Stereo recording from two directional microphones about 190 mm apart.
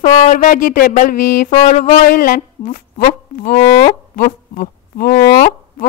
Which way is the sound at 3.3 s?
40° left (ahead or behind).